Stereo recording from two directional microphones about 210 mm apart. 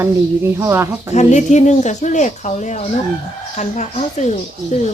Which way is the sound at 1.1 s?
35° left (ahead or behind).